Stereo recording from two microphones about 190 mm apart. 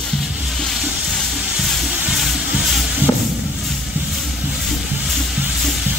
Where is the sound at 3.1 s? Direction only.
20° left (ahead or behind).